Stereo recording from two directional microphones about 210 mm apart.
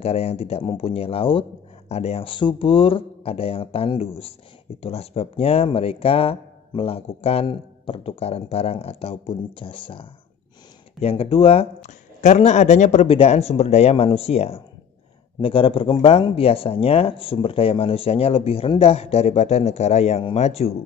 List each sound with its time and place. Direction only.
0.0 s speech: 30° left (ahead or behind)